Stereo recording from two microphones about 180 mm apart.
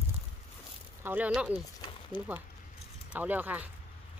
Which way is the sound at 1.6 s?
25° left (ahead or behind).